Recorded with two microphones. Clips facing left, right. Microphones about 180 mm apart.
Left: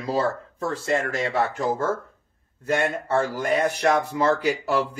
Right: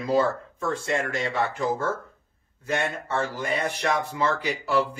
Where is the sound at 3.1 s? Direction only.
40° left (ahead or behind).